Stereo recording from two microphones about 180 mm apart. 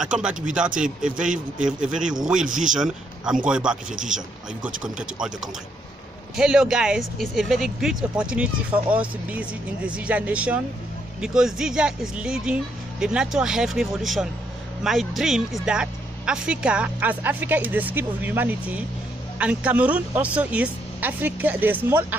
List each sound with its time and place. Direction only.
0.2 s speech: 5° right (ahead or behind)
2.4 s speech: 45° right (ahead or behind)
3.4 s speech: 5° right (ahead or behind)
4.8 s speech: 5° right (ahead or behind)
6.3 s speech: 5° right (ahead or behind)